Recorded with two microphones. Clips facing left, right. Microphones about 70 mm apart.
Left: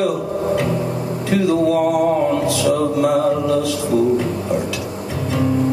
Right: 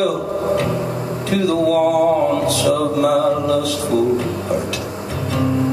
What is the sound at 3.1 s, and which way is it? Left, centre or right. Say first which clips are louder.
Speech: even; right.